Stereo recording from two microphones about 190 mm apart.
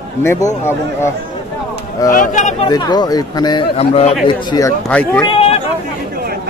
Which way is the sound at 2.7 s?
20° left (ahead or behind).